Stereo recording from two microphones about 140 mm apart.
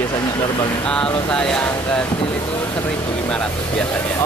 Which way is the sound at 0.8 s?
5° left (ahead or behind).